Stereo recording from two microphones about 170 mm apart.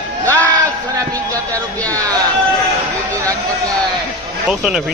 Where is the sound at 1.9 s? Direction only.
20° right (ahead or behind).